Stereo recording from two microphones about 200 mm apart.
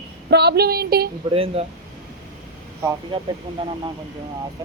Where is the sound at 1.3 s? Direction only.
30° right (ahead or behind).